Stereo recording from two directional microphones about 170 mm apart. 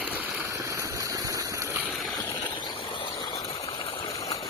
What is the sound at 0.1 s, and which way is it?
Vehicle, 10° right (ahead or behind).